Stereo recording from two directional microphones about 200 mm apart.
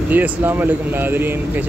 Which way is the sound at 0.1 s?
10° right (ahead or behind).